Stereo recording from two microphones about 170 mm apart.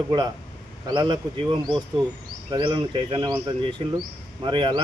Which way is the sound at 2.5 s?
30° right (ahead or behind).